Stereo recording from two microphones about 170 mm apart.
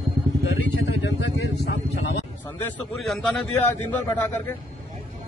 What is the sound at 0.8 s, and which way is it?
Vehicle, 90° left.